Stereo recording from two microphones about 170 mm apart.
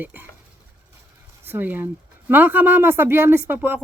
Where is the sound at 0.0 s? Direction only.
10° right (ahead or behind).